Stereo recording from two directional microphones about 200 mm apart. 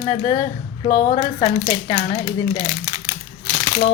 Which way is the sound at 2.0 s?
30° left (ahead or behind).